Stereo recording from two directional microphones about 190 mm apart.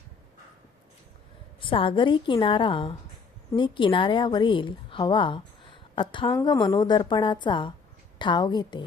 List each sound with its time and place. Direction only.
1.6 s a woman's voice: 25° left (ahead or behind)